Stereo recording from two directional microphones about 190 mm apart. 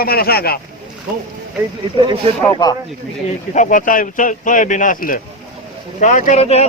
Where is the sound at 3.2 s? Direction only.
40° left (ahead or behind).